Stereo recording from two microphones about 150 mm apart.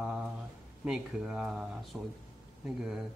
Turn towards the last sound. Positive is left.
turn(degrees=-5)  # may be behind; listen again after turning